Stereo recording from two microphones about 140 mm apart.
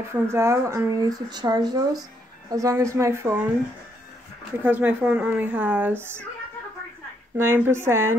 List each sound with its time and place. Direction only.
0.1 s speech: 20° right (ahead or behind)
4.6 s a woman's voice: 10° right (ahead or behind)
7.3 s a woman's voice: 15° right (ahead or behind)